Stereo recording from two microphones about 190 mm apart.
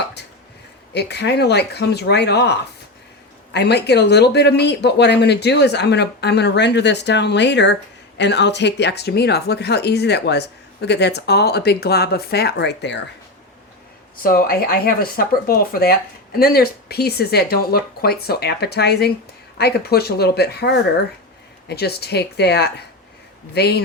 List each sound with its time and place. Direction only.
0.9 s speech: 60° left (ahead or behind)
14.2 s speech: 50° left (ahead or behind)